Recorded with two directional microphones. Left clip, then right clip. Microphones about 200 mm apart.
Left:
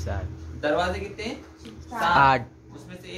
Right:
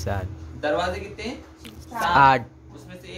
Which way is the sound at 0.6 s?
5° left (ahead or behind).